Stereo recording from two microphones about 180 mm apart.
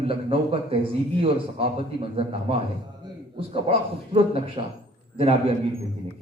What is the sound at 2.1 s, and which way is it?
Speech, 30° right (ahead or behind).